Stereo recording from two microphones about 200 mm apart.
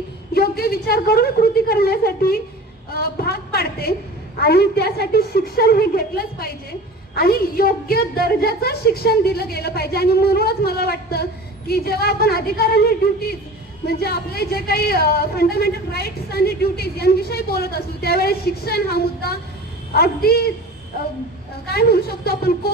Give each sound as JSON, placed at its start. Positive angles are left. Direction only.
{"t": 0.3, "sound": "a woman's voice", "side_deg": 50}
{"t": 21.6, "sound": "a woman's voice", "side_deg": 50}